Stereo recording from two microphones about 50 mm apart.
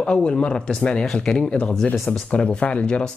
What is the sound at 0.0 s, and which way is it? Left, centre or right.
Speech, centre.